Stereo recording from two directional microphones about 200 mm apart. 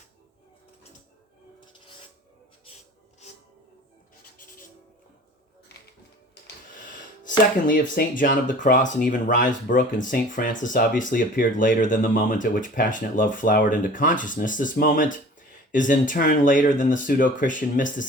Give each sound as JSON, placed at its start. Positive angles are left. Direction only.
{"t": 7.3, "sound": "speech", "side_deg": 40}